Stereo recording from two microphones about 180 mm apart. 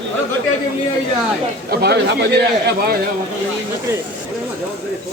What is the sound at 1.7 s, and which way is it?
Speech, 65° right (ahead or behind).